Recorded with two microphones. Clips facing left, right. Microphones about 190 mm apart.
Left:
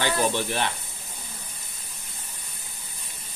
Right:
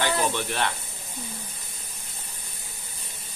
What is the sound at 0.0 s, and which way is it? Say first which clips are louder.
Speech: left 1 dB; 20° left (ahead or behind).